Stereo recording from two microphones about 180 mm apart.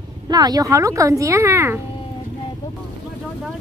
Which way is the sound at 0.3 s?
20° right (ahead or behind).